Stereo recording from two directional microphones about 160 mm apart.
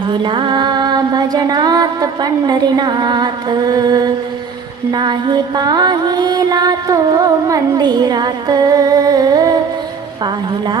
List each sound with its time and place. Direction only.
0.1 s music: 30° right (ahead or behind)